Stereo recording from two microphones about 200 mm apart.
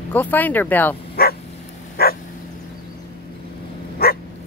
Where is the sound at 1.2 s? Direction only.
50° left (ahead or behind).